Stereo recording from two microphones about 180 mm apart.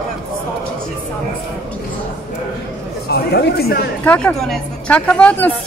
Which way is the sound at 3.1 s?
65° left (ahead or behind).